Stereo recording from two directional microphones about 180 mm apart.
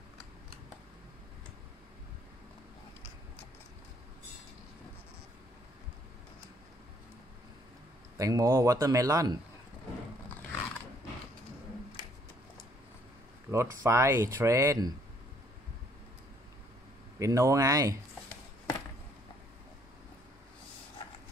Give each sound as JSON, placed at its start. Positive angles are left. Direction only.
{"t": 8.2, "sound": "speech", "side_deg": -20}
{"t": 13.5, "sound": "speech", "side_deg": -15}
{"t": 17.2, "sound": "speech", "side_deg": -15}